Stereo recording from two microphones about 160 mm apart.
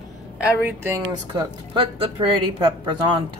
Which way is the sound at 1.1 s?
30° right (ahead or behind).